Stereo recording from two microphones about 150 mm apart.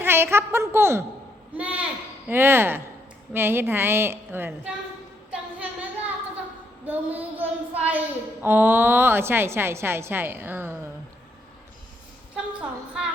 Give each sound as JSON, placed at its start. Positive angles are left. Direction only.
{"t": 0.0, "sound": "a woman's voice", "side_deg": -15}
{"t": 5.3, "sound": "a sound", "side_deg": -10}
{"t": 6.8, "sound": "a woman's voice", "side_deg": -10}